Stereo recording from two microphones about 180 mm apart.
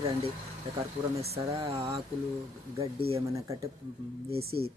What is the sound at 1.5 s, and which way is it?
Speech, 35° right (ahead or behind).